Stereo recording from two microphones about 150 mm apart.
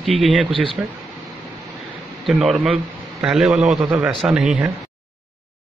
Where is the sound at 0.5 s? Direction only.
35° right (ahead or behind).